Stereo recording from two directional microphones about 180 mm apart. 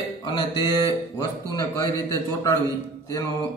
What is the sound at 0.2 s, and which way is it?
Speech, 25° left (ahead or behind).